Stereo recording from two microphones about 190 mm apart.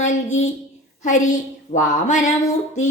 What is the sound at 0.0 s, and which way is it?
A woman's voice, 40° left (ahead or behind).